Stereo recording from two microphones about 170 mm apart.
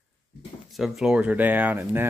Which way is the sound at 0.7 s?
Centre (ahead or behind).